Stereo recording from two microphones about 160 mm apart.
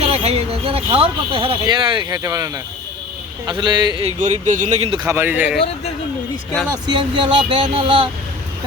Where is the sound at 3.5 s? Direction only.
30° right (ahead or behind).